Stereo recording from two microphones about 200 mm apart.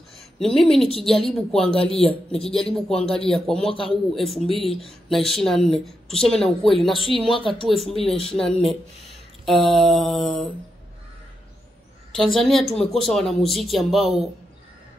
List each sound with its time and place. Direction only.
0.4 s speech: centre (ahead or behind)
3.7 s speech: 25° left (ahead or behind)
4.1 s speech: centre (ahead or behind)
7.3 s speech: 25° left (ahead or behind)
7.6 s speech: centre (ahead or behind)
9.8 s speech: centre (ahead or behind)
12.2 s speech: centre (ahead or behind)